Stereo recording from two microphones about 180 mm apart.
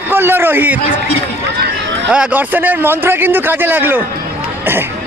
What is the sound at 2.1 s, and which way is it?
Speech, 5° right (ahead or behind).